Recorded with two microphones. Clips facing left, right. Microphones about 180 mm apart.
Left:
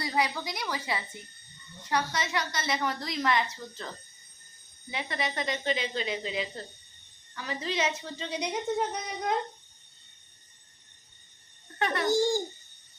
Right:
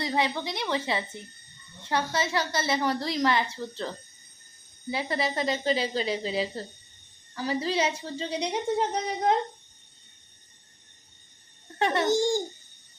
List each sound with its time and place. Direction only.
0.0 s a woman's voice: 25° right (ahead or behind)
11.8 s a woman's voice: 25° right (ahead or behind)